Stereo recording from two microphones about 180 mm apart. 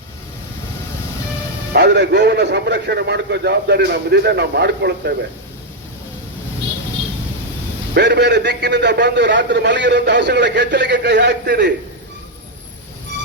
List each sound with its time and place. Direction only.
1.7 s a man's voice: 70° right (ahead or behind)
7.9 s a man's voice: 70° right (ahead or behind)